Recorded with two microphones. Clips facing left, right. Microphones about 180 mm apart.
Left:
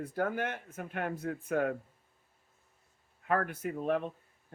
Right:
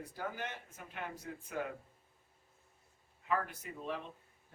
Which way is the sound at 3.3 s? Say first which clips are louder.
Left 6 dB; 55° left (ahead or behind).